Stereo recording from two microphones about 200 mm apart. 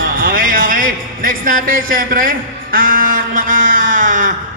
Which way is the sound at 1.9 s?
45° right (ahead or behind).